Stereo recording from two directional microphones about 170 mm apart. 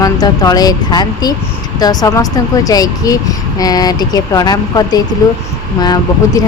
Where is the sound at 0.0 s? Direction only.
20° left (ahead or behind).